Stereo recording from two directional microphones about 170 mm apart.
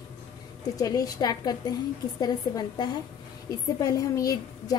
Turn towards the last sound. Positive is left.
turn(degrees=20)  # may be behind; listen again after turning